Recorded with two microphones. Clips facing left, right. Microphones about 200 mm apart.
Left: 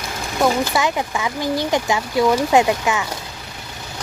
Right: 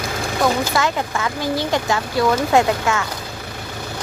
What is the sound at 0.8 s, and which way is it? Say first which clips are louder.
Speech: even; 15° left (ahead or behind).